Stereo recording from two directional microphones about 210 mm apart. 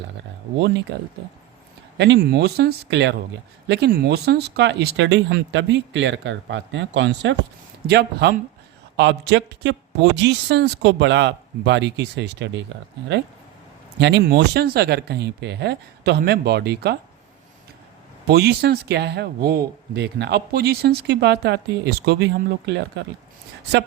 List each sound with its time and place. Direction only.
0.6 s speech: 55° right (ahead or behind)
2.0 s speech: 50° right (ahead or behind)
14.0 s speech: 55° right (ahead or behind)
18.3 s speech: 50° right (ahead or behind)